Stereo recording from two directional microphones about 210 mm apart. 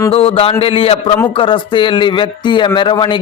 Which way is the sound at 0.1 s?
30° left (ahead or behind).